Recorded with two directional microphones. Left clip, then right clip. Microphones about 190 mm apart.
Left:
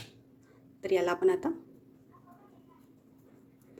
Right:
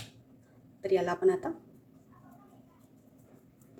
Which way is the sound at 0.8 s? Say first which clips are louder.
Even; 45° left (ahead or behind).